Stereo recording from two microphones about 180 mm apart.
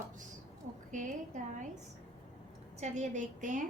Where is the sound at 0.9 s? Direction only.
45° right (ahead or behind).